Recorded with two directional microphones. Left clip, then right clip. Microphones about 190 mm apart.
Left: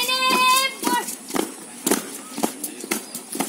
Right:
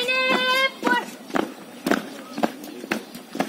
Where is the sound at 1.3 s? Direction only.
15° left (ahead or behind).